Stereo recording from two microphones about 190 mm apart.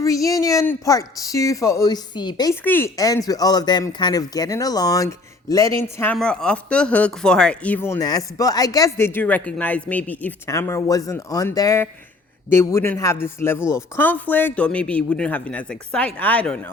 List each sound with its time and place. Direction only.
0.0 s speech: 15° left (ahead or behind)
6.1 s speech: 5° left (ahead or behind)